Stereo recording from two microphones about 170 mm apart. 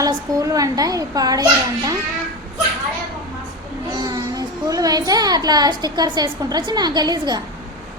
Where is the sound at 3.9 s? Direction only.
20° right (ahead or behind).